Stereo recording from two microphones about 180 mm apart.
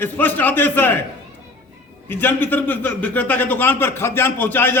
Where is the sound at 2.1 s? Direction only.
10° left (ahead or behind).